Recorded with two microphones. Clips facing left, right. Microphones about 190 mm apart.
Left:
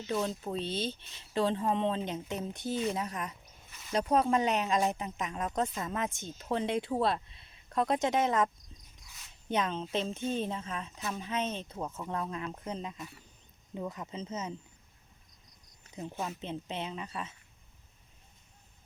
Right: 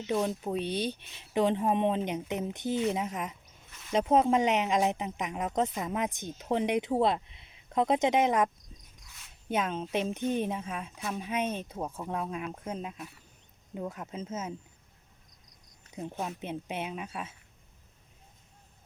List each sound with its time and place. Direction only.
0.3 s speech: 15° right (ahead or behind)
9.1 s speech: 5° right (ahead or behind)
16.2 s speech: 10° right (ahead or behind)